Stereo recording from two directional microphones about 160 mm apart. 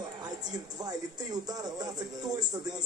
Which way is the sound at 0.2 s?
25° right (ahead or behind).